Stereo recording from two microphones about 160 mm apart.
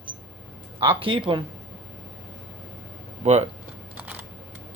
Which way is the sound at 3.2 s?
40° right (ahead or behind).